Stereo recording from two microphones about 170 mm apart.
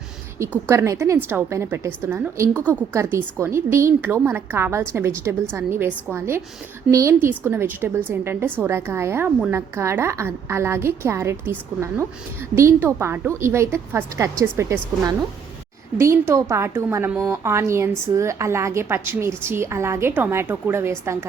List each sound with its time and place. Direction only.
0.7 s a woman's voice: 15° right (ahead or behind)